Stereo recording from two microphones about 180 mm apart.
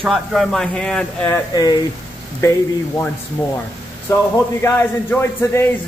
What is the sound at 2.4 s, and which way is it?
Speech, 15° left (ahead or behind).